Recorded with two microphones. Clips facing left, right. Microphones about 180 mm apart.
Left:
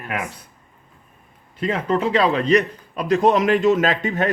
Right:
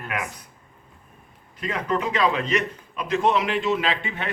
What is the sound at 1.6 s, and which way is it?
A man's voice, 30° left (ahead or behind).